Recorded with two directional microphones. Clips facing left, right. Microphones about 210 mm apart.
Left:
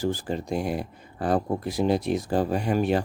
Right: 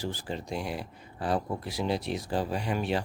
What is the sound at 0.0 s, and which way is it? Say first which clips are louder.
Speech: left 7 dB; 45° left (ahead or behind).